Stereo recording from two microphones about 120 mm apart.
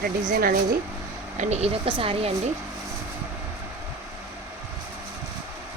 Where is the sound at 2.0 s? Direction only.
50° right (ahead or behind).